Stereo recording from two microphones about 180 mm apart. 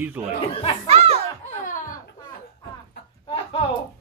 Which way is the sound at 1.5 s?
45° left (ahead or behind).